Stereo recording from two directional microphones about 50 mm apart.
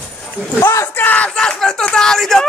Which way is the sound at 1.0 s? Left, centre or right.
Left.